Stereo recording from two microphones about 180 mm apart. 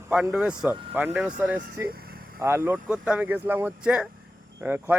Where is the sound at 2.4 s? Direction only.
15° right (ahead or behind).